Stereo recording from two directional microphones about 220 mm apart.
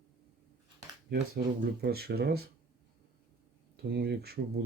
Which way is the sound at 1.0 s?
45° right (ahead or behind).